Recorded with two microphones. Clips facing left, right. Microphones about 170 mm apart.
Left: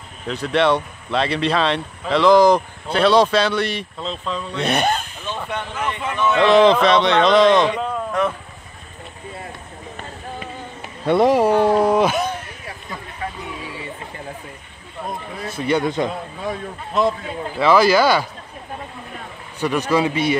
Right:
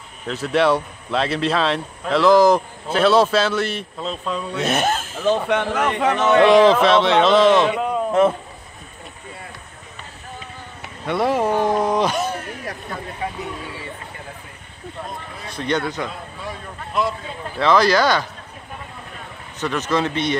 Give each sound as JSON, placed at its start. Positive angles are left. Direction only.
{"t": 0.3, "sound": "speech", "side_deg": -5}
{"t": 5.2, "sound": "speech", "side_deg": -85}
{"t": 6.4, "sound": "speech", "side_deg": -10}
{"t": 8.1, "sound": "speech", "side_deg": -25}
{"t": 10.8, "sound": "a sound", "side_deg": 20}
{"t": 11.6, "sound": "speech", "side_deg": 10}
{"t": 15.4, "sound": "speech", "side_deg": 5}
{"t": 17.6, "sound": "speech", "side_deg": 5}
{"t": 19.6, "sound": "speech", "side_deg": 10}